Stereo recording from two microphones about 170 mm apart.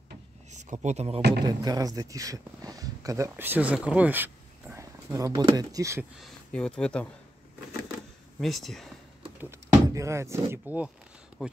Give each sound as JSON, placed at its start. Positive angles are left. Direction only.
{"t": 0.5, "sound": "speech", "side_deg": -45}
{"t": 1.4, "sound": "speech", "side_deg": -25}
{"t": 6.1, "sound": "speech", "side_deg": 5}
{"t": 8.4, "sound": "speech", "side_deg": 0}
{"t": 9.4, "sound": "speech", "side_deg": -15}